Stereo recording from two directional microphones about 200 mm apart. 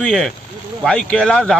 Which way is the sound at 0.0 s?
5° left (ahead or behind).